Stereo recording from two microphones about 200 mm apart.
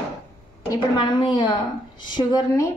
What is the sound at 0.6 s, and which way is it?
A woman's voice, 20° left (ahead or behind).